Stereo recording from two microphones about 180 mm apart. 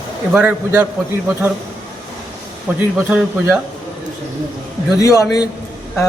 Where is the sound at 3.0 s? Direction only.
10° right (ahead or behind).